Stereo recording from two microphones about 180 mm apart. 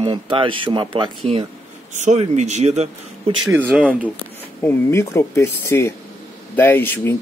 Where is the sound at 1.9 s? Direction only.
40° right (ahead or behind).